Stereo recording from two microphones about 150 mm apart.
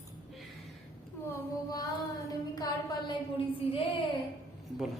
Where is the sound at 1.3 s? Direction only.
25° left (ahead or behind).